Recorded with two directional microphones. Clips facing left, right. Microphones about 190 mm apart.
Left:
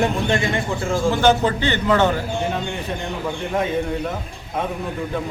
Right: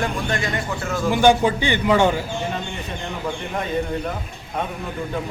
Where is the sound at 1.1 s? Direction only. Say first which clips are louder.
Right 2 dB; 15° right (ahead or behind).